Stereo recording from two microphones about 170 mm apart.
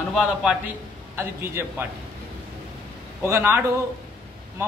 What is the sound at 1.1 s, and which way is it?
Speech, 15° right (ahead or behind).